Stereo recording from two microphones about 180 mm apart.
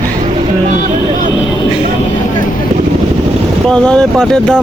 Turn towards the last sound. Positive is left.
turn(degrees=5)  # may be behind; listen again after turning